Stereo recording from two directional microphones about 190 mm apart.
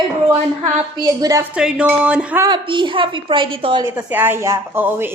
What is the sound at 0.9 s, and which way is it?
Speech, 20° right (ahead or behind).